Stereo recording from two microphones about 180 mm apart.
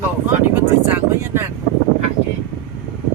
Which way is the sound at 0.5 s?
10° right (ahead or behind).